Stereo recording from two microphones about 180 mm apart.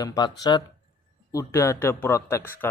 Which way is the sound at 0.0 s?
20° left (ahead or behind).